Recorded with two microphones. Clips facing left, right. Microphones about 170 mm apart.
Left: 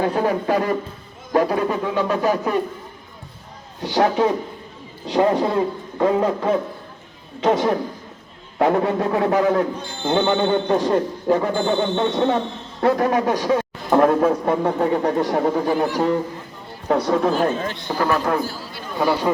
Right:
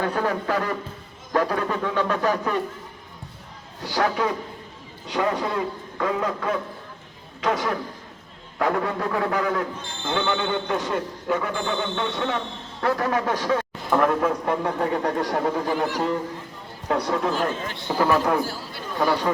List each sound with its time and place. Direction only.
0.2 s speech: 15° left (ahead or behind)
3.8 s a man's voice: 25° left (ahead or behind)
12.8 s a man's voice: 20° left (ahead or behind)
13.9 s a man's voice: 30° left (ahead or behind)
17.8 s a man's voice: 10° right (ahead or behind)
18.9 s speech: 5° left (ahead or behind)